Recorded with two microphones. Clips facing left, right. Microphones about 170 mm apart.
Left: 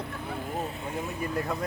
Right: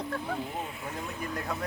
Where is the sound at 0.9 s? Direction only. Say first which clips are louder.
Left 5 dB; 5° left (ahead or behind).